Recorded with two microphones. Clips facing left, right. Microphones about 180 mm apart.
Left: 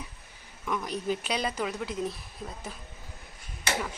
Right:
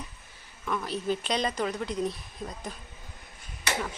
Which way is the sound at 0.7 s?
15° left (ahead or behind).